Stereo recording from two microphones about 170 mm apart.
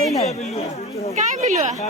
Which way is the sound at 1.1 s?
45° right (ahead or behind).